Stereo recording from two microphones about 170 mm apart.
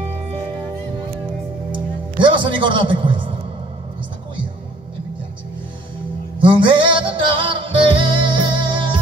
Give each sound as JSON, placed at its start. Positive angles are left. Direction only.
{"t": 1.7, "sound": "music", "side_deg": -30}
{"t": 6.4, "sound": "music", "side_deg": -30}